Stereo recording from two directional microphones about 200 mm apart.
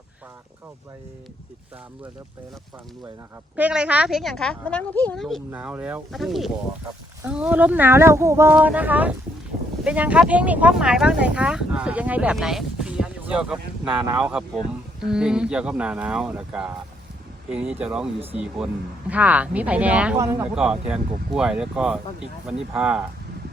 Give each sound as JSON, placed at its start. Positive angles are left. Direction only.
{"t": 3.5, "sound": "speech", "side_deg": -5}
{"t": 13.8, "sound": "speech", "side_deg": -20}
{"t": 14.2, "sound": "speech", "side_deg": -5}